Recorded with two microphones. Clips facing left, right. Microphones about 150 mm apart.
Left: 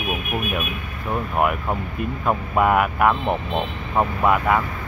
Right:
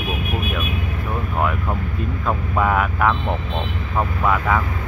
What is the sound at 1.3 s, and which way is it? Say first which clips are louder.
Speech: left 1 dB; 15° left (ahead or behind).